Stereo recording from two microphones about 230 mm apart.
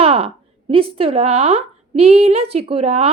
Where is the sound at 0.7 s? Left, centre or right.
Right.